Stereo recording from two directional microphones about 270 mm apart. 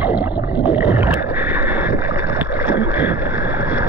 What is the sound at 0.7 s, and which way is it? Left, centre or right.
Boat, centre.